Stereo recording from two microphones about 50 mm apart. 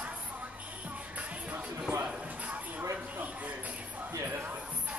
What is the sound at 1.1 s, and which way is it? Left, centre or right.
Music, right.